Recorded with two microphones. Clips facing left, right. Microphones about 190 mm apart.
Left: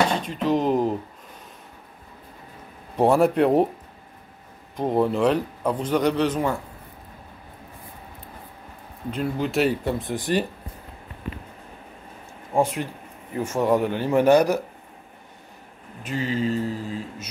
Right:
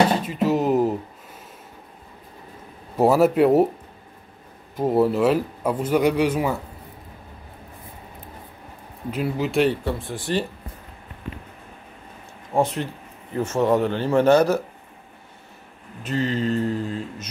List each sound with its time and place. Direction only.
0.2 s speech: 5° right (ahead or behind)
3.0 s speech: 5° right (ahead or behind)
4.7 s speech: 5° right (ahead or behind)
9.1 s speech: 5° right (ahead or behind)
9.8 s speech: 20° left (ahead or behind)
12.5 s speech: 5° right (ahead or behind)
13.4 s mantra: 10° left (ahead or behind)
16.0 s mantra: 10° left (ahead or behind)